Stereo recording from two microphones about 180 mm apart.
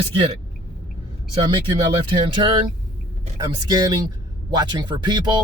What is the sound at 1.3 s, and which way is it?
Speech, 30° right (ahead or behind).